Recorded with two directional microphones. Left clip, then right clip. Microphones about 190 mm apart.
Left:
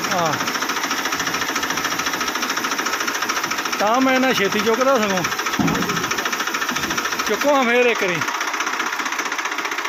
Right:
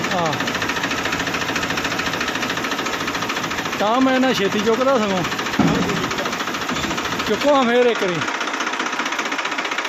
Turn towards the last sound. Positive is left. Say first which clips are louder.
# right 1 dB
turn(degrees=0)  # may be behind; listen again after turning